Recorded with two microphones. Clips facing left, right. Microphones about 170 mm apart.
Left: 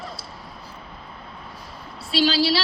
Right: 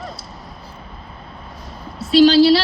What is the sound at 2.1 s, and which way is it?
Speech, 45° right (ahead or behind).